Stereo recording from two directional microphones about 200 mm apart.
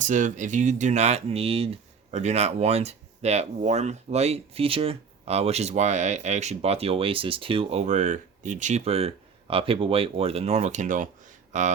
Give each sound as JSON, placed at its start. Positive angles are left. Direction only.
{"t": 0.0, "sound": "speech", "side_deg": -40}